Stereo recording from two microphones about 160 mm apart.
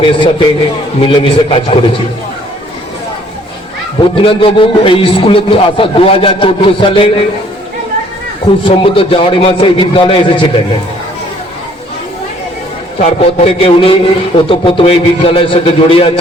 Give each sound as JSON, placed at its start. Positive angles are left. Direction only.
{"t": 0.0, "sound": "a man's voice", "side_deg": 30}
{"t": 4.2, "sound": "a man's voice", "side_deg": 35}
{"t": 8.6, "sound": "a man's voice", "side_deg": 35}
{"t": 13.0, "sound": "a man's voice", "side_deg": 40}